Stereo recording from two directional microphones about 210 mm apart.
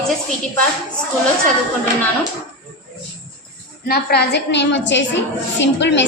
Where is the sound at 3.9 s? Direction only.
50° left (ahead or behind).